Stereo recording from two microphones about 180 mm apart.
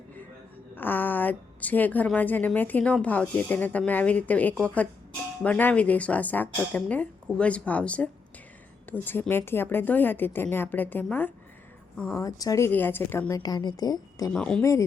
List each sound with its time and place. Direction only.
0.8 s a woman's voice: 10° left (ahead or behind)
14.3 s speech: 5° left (ahead or behind)
14.6 s a woman's voice: 15° left (ahead or behind)